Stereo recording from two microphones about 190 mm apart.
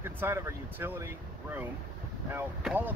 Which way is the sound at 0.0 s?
15° right (ahead or behind).